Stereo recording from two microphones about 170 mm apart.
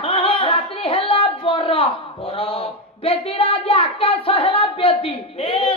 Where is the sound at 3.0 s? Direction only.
35° left (ahead or behind).